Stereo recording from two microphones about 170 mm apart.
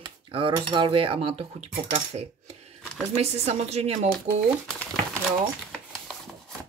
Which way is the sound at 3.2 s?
40° right (ahead or behind).